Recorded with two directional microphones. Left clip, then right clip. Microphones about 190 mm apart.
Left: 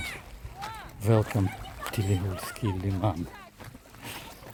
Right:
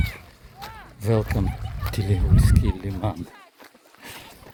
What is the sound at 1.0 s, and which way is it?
Speech, 10° right (ahead or behind).